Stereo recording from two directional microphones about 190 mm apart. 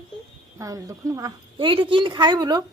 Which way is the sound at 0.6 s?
15° right (ahead or behind).